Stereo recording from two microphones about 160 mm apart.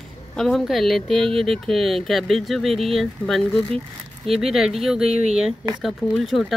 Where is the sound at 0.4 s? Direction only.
Centre (ahead or behind).